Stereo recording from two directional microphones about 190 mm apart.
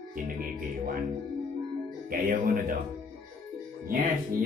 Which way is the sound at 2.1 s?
50° right (ahead or behind).